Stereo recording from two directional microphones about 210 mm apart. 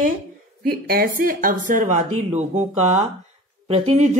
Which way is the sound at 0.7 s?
45° right (ahead or behind).